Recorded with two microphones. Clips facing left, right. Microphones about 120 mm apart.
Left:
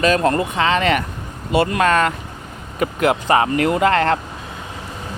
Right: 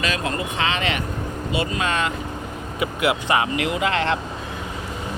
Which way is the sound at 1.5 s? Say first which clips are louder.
Left 8 dB; 55° left (ahead or behind).